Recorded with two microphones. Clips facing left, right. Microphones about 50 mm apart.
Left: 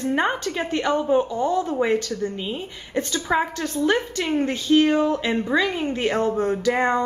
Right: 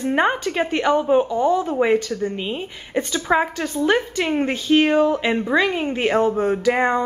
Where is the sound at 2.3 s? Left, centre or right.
Right.